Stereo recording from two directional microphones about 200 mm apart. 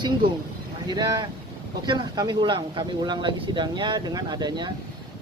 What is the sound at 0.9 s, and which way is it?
Speech, 20° right (ahead or behind).